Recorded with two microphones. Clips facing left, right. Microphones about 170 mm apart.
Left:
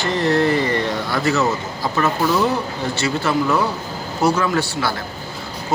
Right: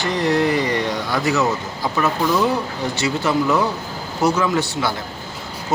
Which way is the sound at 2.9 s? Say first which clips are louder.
Even; 15° right (ahead or behind).